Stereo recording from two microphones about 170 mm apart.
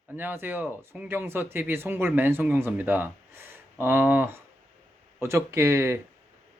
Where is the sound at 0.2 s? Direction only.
10° right (ahead or behind).